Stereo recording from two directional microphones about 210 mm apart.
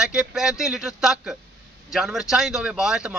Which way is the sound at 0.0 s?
5° right (ahead or behind).